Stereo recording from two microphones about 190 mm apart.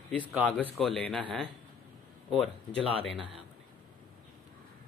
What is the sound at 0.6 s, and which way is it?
Speech, 5° left (ahead or behind).